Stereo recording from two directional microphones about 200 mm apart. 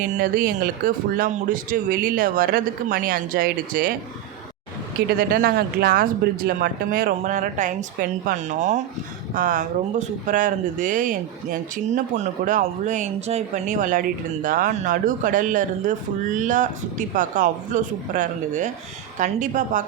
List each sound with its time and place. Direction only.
0.0 s speech: 45° right (ahead or behind)
4.9 s speech: 50° right (ahead or behind)